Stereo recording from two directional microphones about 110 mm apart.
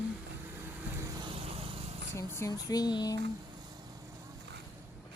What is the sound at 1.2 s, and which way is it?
Vehicle, 55° right (ahead or behind).